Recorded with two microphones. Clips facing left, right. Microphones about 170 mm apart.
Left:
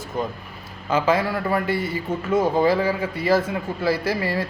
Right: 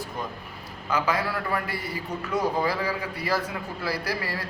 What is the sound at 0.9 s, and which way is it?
A man's voice, 25° left (ahead or behind).